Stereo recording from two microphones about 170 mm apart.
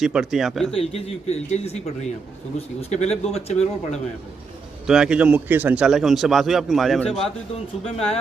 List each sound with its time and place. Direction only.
0.0 s a man's voice: 5° right (ahead or behind)
0.7 s speech: 35° left (ahead or behind)
4.9 s a man's voice: 5° right (ahead or behind)
7.9 s speech: 35° left (ahead or behind)